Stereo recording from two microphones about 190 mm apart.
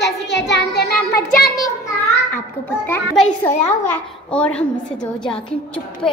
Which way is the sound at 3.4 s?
10° left (ahead or behind).